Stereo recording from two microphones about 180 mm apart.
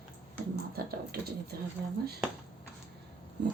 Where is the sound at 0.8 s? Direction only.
55° right (ahead or behind).